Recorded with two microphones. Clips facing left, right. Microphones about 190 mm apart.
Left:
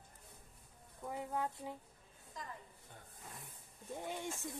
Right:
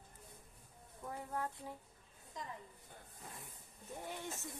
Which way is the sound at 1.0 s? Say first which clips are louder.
Left 3 dB; 15° left (ahead or behind).